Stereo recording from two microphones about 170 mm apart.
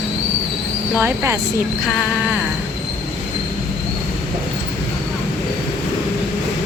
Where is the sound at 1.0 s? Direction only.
15° right (ahead or behind).